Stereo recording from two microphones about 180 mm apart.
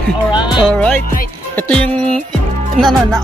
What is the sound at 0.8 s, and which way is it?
Music, 5° left (ahead or behind).